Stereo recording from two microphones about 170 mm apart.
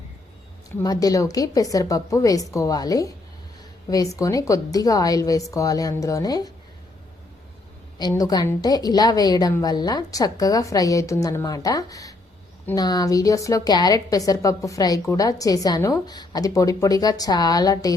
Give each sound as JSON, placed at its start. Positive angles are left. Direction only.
{"t": 0.8, "sound": "a woman's voice", "side_deg": 20}
{"t": 8.1, "sound": "a woman's voice", "side_deg": 20}